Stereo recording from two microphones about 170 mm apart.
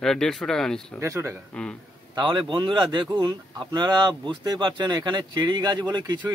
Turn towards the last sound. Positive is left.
turn(degrees=-25)  # may be behind; listen again after turning